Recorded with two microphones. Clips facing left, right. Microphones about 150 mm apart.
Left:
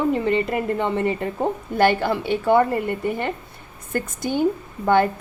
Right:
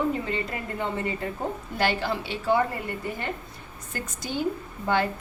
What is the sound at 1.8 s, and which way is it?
Speech, 55° left (ahead or behind).